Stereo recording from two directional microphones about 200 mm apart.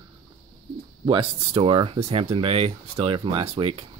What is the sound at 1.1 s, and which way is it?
Speech, 30° right (ahead or behind).